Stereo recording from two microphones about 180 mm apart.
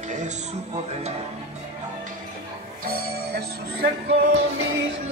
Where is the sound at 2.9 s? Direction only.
55° right (ahead or behind).